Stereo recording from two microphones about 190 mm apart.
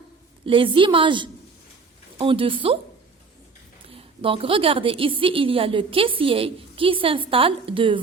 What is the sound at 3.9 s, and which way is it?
A woman's voice, 30° right (ahead or behind).